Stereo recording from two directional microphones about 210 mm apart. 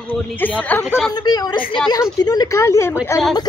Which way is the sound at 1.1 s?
20° left (ahead or behind).